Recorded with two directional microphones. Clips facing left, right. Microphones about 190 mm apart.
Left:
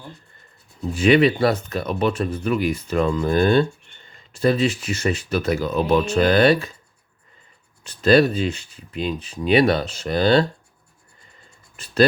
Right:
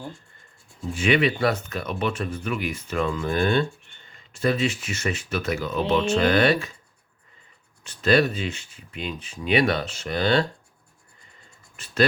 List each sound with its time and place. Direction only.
0.9 s speech: 35° left (ahead or behind)
7.9 s speech: 35° left (ahead or behind)
11.8 s speech: 35° left (ahead or behind)